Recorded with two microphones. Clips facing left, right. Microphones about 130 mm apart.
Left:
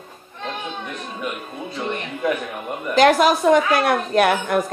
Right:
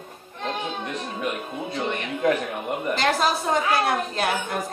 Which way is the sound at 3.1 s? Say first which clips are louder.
Left 7 dB; 80° left.